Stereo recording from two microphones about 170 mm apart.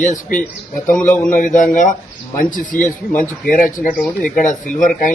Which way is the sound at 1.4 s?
50° left (ahead or behind).